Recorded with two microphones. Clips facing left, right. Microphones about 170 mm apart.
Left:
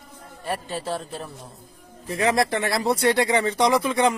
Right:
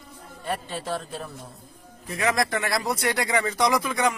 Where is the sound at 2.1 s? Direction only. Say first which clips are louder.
Left 3 dB; 30° left (ahead or behind).